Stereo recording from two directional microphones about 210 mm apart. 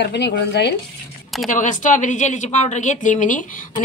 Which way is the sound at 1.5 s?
40° left (ahead or behind).